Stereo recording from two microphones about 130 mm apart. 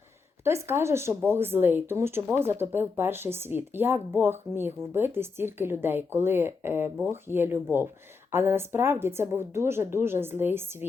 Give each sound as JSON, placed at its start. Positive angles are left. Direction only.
{"t": 0.4, "sound": "speech", "side_deg": -20}